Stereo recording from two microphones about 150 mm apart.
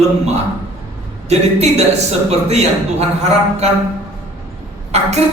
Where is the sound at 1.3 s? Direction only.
45° right (ahead or behind).